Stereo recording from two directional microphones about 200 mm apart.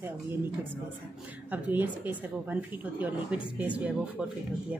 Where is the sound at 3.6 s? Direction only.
5° right (ahead or behind).